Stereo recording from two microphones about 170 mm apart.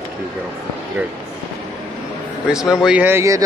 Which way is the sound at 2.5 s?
5° right (ahead or behind).